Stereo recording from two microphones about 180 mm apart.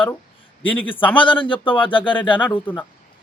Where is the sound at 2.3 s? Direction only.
10° left (ahead or behind).